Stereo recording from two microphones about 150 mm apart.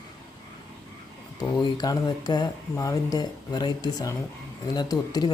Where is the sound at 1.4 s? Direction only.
30° left (ahead or behind).